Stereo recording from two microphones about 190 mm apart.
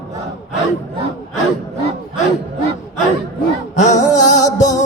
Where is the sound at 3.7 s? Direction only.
40° left (ahead or behind).